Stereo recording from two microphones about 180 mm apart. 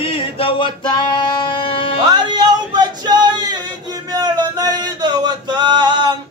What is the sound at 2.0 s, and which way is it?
Music, 25° right (ahead or behind).